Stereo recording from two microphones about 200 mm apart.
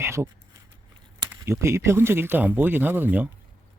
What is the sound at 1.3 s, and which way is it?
Speech, 15° right (ahead or behind).